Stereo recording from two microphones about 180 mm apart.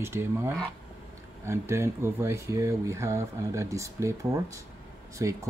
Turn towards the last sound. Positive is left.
turn(degrees=-15)  # may be behind; listen again after turning